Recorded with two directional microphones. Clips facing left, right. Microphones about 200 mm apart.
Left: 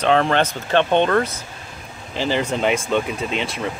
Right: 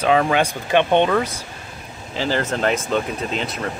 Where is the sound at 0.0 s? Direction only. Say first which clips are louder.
Even; 5° right (ahead or behind).